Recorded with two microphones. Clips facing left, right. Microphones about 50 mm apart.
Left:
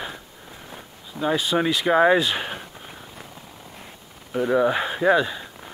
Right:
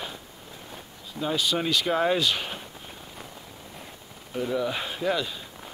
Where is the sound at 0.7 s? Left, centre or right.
Centre.